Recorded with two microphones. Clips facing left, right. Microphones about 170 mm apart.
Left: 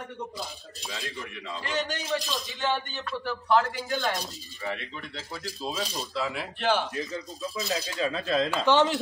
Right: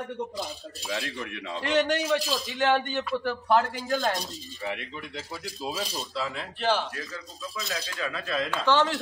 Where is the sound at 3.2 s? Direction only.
50° right (ahead or behind).